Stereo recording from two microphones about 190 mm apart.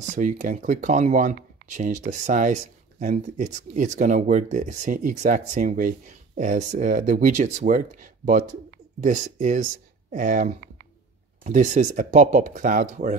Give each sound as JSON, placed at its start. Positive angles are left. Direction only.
{"t": 0.1, "sound": "speech", "side_deg": -40}